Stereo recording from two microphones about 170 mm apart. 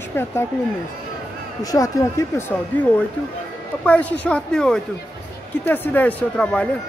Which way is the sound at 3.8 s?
10° left (ahead or behind).